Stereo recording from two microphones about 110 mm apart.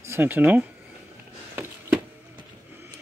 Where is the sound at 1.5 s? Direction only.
20° right (ahead or behind).